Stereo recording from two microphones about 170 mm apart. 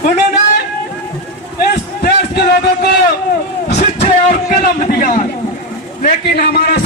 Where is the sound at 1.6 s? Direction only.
65° left (ahead or behind).